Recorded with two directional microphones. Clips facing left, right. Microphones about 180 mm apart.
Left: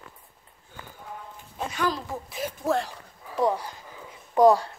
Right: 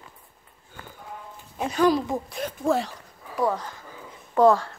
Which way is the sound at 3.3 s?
20° left (ahead or behind).